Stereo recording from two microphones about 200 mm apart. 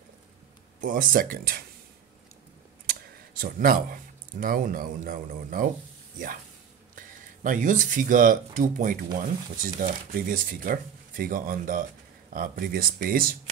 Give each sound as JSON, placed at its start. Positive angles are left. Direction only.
{"t": 0.7, "sound": "speech", "side_deg": -40}
{"t": 2.9, "sound": "speech", "side_deg": -45}